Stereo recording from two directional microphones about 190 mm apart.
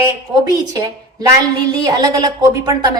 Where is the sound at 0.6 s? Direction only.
20° right (ahead or behind).